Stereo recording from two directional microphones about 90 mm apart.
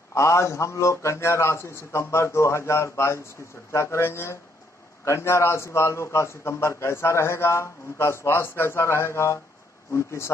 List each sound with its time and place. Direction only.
0.1 s a man's voice: 30° left (ahead or behind)